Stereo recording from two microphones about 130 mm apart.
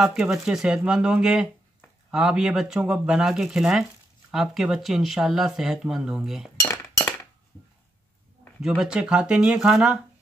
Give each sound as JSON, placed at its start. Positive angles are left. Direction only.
{"t": 0.0, "sound": "speech", "side_deg": -5}
{"t": 6.6, "sound": "chink", "side_deg": 20}
{"t": 8.5, "sound": "speech", "side_deg": -5}